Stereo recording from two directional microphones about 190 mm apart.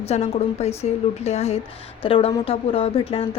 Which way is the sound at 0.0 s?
35° left (ahead or behind).